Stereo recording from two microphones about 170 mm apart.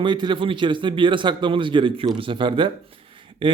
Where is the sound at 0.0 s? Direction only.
25° right (ahead or behind).